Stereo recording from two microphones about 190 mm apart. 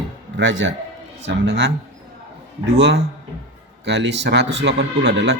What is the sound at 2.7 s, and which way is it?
A man's voice, 65° right (ahead or behind).